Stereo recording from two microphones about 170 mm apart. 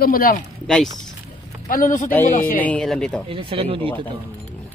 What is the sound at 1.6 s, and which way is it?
Speech, 50° left (ahead or behind).